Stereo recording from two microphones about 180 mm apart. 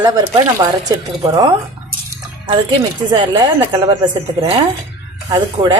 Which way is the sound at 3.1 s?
25° right (ahead or behind).